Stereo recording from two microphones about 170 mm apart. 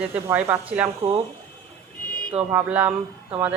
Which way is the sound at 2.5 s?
10° right (ahead or behind).